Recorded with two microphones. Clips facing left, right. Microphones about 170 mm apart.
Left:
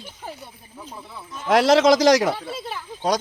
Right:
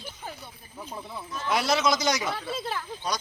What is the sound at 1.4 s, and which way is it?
Speech, 90° left.